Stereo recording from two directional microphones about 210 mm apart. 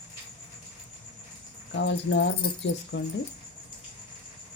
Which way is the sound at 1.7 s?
60° left (ahead or behind).